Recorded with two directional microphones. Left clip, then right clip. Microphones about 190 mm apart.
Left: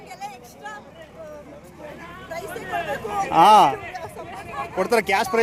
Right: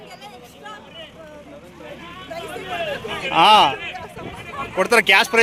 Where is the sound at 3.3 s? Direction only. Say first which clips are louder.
Right 1 dB; 20° left (ahead or behind).